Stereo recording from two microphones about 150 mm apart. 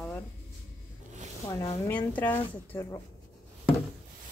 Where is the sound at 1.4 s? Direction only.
25° left (ahead or behind).